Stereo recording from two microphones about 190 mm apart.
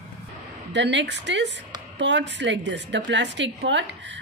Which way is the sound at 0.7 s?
65° right (ahead or behind).